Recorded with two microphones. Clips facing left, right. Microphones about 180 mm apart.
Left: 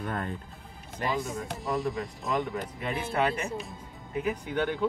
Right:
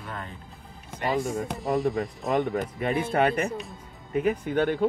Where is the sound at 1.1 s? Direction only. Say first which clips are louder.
Right 5 dB; 50° right (ahead or behind).